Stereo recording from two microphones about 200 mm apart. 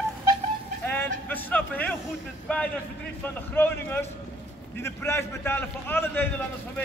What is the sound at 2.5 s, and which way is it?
A man's voice, 5° left (ahead or behind).